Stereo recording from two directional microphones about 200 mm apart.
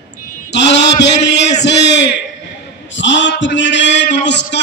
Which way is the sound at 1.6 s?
60° left (ahead or behind).